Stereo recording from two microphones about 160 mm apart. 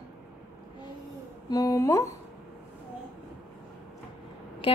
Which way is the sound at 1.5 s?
20° left (ahead or behind).